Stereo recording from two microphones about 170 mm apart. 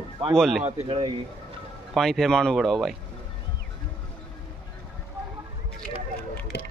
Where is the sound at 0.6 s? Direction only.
30° right (ahead or behind).